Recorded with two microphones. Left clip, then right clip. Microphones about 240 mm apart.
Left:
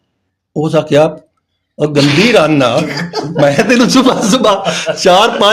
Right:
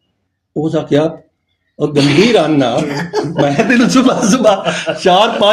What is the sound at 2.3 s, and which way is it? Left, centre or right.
Speech, left.